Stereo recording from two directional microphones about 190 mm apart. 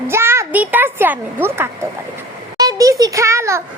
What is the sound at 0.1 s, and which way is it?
A child's voice, 15° right (ahead or behind).